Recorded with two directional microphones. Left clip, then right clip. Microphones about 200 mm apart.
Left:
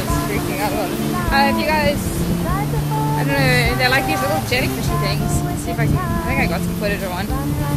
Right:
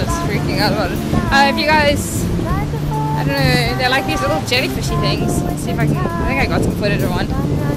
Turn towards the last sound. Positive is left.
turn(degrees=-20)  # may be behind; listen again after turning